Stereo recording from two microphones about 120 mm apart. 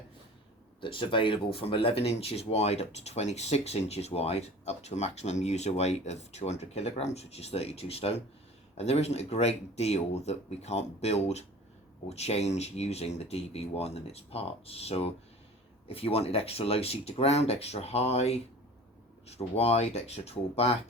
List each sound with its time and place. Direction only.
0.8 s speech: 45° left (ahead or behind)